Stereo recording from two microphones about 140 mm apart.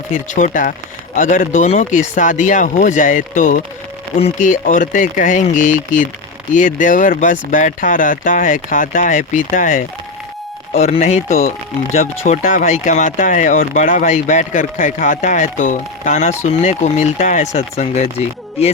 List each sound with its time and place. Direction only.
0.3 s speech: 65° left (ahead or behind)
10.8 s speech: 50° left (ahead or behind)
11.3 s speech: 90° left
11.9 s speech: 60° left (ahead or behind)